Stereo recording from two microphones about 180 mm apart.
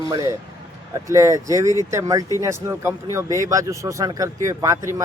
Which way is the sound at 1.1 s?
15° right (ahead or behind).